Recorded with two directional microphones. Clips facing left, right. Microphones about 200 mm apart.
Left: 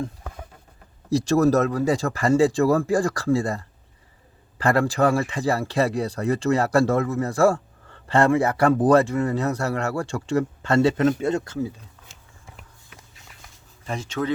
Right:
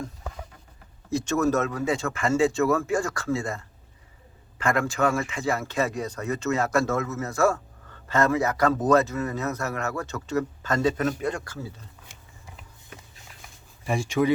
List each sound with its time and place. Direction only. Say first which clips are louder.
1.1 s speech: left 5 dB; 35° left (ahead or behind)
13.8 s speech: right 3 dB; 10° right (ahead or behind)